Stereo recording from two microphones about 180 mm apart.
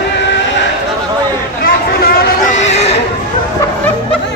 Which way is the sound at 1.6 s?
55° left (ahead or behind).